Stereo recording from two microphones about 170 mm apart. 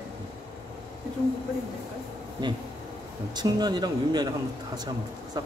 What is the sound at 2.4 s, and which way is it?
A man's voice, 25° right (ahead or behind).